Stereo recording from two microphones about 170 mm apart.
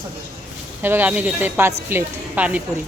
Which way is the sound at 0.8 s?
10° right (ahead or behind).